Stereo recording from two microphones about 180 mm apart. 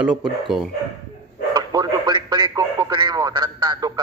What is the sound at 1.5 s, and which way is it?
Radio, 20° right (ahead or behind).